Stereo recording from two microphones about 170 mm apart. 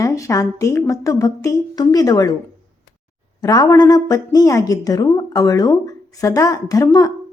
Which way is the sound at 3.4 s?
20° left (ahead or behind).